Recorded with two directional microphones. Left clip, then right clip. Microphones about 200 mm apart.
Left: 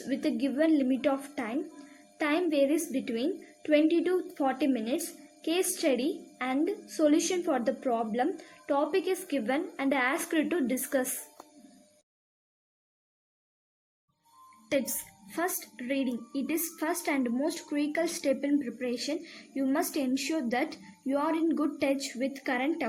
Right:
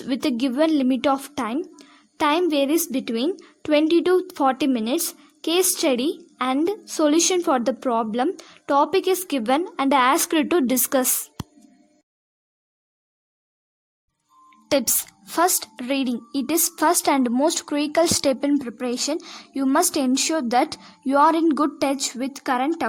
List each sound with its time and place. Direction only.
0.1 s a woman's voice: 45° right (ahead or behind)
14.7 s a woman's voice: 45° right (ahead or behind)